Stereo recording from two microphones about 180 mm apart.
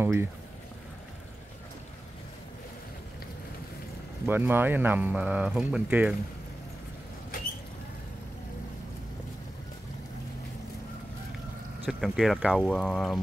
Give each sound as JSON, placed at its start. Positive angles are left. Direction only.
{"t": 0.0, "sound": "speech", "side_deg": -15}
{"t": 4.3, "sound": "speech", "side_deg": -10}
{"t": 11.8, "sound": "speech", "side_deg": 0}